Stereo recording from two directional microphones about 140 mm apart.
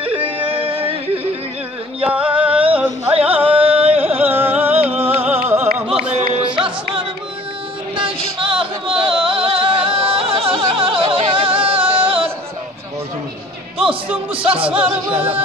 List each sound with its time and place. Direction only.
0.0 s music: 40° right (ahead or behind)
2.0 s music: 10° right (ahead or behind)
3.4 s carnatic music: 40° right (ahead or behind)
4.0 s carnatic music: 15° right (ahead or behind)
4.8 s music: 15° right (ahead or behind)
6.3 s music: 40° right (ahead or behind)
7.9 s music: 40° right (ahead or behind)
13.7 s music: 10° right (ahead or behind)
14.8 s singing: 40° right (ahead or behind)